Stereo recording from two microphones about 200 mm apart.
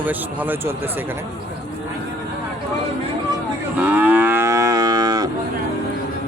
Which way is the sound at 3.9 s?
10° right (ahead or behind).